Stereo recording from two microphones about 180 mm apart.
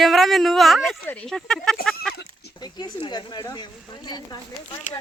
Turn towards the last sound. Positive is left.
turn(degrees=25)  # may be behind; listen again after turning